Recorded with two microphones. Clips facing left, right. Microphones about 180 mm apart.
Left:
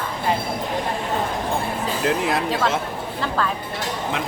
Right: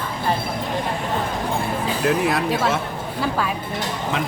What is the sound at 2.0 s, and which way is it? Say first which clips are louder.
Speech: right 2 dB; 20° left (ahead or behind).